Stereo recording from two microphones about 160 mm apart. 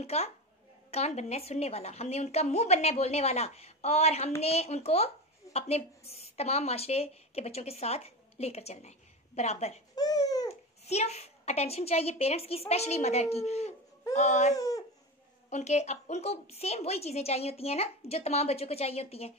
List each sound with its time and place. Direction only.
0.0 s a woman's voice: 40° left (ahead or behind)
9.9 s a sound: 25° left (ahead or behind)
10.5 s a child's voice: 40° left (ahead or behind)
14.5 s speech: 20° left (ahead or behind)
15.5 s a woman's voice: 45° left (ahead or behind)